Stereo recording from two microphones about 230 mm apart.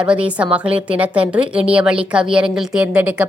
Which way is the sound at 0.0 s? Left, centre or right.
Centre.